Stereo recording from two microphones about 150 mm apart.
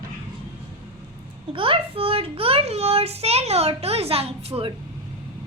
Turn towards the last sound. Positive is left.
turn(degrees=-40)  # may be behind; listen again after turning